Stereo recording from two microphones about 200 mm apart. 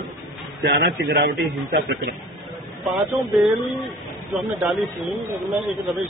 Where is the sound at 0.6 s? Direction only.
60° right (ahead or behind).